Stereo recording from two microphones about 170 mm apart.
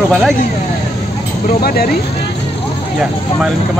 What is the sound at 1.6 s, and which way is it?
Speech, 60° left (ahead or behind).